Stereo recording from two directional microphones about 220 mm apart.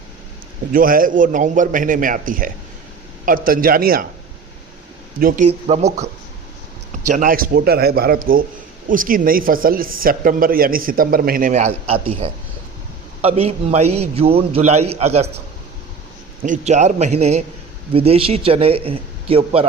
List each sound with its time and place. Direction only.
0.7 s a man's voice: 40° right (ahead or behind)
5.2 s a man's voice: 30° right (ahead or behind)
7.1 s a man's voice: 40° right (ahead or behind)
16.4 s a man's voice: 35° right (ahead or behind)